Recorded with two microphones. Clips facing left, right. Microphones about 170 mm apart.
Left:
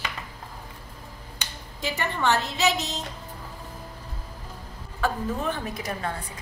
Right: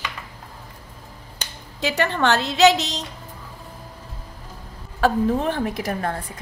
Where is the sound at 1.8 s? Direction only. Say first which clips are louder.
Right 7 dB; 85° right.